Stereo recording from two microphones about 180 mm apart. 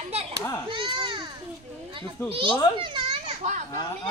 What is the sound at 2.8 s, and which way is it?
Children playing, 25° right (ahead or behind).